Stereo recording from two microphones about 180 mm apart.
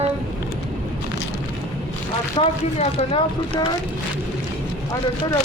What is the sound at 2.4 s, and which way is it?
Speech, 30° left (ahead or behind).